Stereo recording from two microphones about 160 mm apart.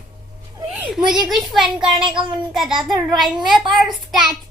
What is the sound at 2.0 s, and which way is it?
Speech, 30° right (ahead or behind).